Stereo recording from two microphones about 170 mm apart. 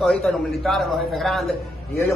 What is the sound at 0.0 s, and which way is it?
A man's voice, centre (ahead or behind).